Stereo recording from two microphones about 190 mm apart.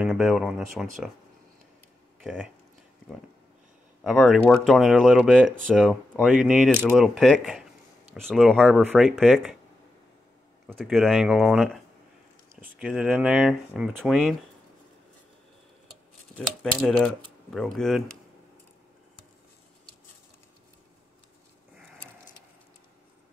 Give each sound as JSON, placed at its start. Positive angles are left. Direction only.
{"t": 0.0, "sound": "speech", "side_deg": 0}
{"t": 2.2, "sound": "speech", "side_deg": -5}
{"t": 4.0, "sound": "speech", "side_deg": 0}
{"t": 10.8, "sound": "speech", "side_deg": 0}
{"t": 16.3, "sound": "speech", "side_deg": 5}